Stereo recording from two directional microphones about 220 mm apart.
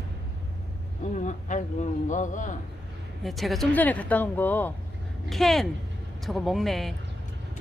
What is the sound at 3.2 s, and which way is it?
Speech, centre (ahead or behind).